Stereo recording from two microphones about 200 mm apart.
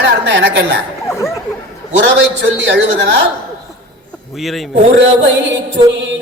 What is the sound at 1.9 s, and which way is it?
A man's voice, 65° right (ahead or behind).